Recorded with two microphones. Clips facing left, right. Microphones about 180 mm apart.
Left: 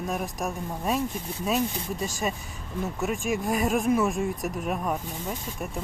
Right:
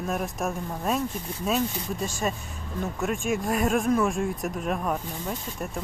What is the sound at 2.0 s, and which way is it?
Speech, 5° left (ahead or behind).